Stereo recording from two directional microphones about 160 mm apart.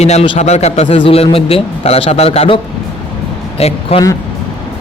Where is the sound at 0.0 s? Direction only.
45° left (ahead or behind).